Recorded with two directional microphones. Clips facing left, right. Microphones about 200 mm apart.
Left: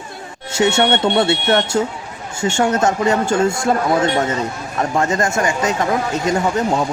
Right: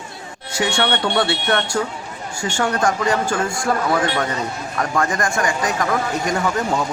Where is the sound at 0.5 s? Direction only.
25° left (ahead or behind).